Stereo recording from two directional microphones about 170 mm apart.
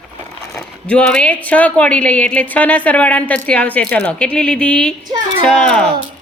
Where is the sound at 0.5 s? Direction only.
5° left (ahead or behind).